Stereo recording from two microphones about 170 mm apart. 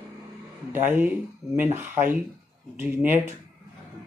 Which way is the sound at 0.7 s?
10° right (ahead or behind).